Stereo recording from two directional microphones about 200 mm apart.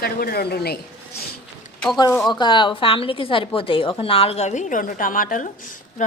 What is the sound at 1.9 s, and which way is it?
A woman's voice, 15° left (ahead or behind).